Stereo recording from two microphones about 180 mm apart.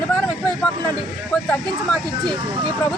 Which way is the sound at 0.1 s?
5° left (ahead or behind).